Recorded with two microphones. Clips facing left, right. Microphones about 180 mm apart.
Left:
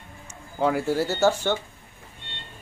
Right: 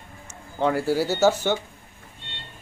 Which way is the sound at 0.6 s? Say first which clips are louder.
Right 1 dB; centre (ahead or behind).